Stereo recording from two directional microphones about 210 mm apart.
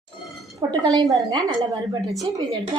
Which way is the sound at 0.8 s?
20° right (ahead or behind).